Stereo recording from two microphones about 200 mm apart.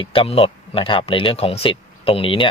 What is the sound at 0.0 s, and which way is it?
Speech, 25° left (ahead or behind).